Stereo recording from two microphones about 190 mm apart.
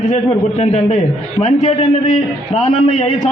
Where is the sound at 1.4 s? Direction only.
40° left (ahead or behind).